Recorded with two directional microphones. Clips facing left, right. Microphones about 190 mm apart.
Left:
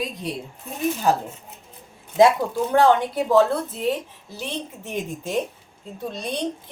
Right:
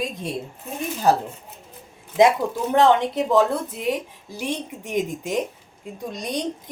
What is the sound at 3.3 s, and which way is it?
A woman's voice, 15° right (ahead or behind).